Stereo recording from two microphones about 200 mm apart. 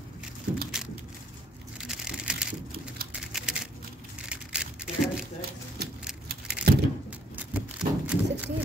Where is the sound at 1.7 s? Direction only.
5° right (ahead or behind).